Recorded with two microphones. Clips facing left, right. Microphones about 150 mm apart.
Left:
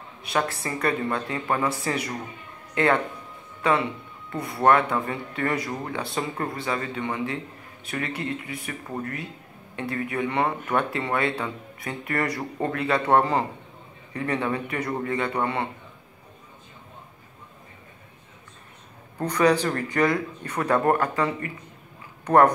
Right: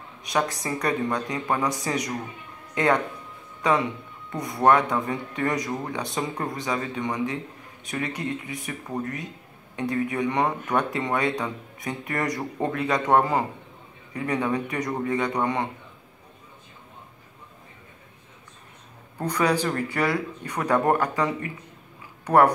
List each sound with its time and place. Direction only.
0.2 s speech: 15° right (ahead or behind)
4.3 s a man's voice: 20° right (ahead or behind)
19.1 s speech: 10° right (ahead or behind)